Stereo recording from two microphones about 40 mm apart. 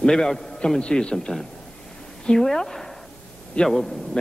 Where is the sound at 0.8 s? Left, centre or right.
Left.